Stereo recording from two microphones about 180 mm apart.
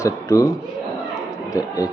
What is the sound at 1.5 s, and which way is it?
Speech, 20° left (ahead or behind).